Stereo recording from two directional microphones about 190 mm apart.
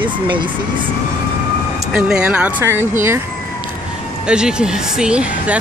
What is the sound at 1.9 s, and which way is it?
Speech, 5° right (ahead or behind).